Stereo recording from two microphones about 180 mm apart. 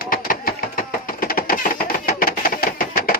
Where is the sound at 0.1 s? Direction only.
50° left (ahead or behind).